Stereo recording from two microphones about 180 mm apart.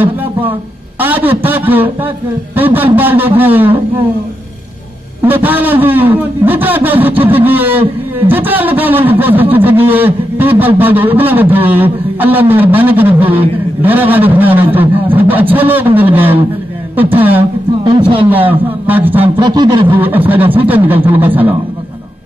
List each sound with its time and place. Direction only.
0.0 s a man's voice: 10° right (ahead or behind)
5.2 s speech: 10° right (ahead or behind)
19.2 s a sound: 25° right (ahead or behind)
19.9 s speech: 10° right (ahead or behind)